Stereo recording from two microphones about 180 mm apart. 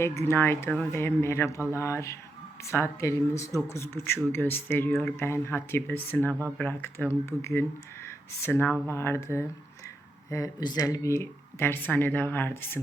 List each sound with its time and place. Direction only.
0.0 s speech: 15° left (ahead or behind)